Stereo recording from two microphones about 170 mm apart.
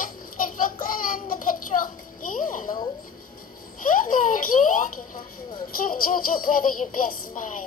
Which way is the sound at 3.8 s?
55° left (ahead or behind).